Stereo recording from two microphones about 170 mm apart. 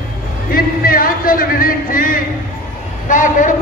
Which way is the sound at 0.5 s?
60° left (ahead or behind).